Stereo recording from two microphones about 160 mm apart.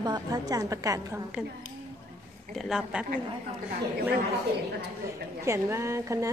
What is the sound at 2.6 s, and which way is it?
Speech, 5° right (ahead or behind).